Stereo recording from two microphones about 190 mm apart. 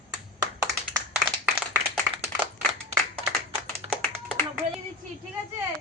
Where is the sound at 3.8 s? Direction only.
30° right (ahead or behind).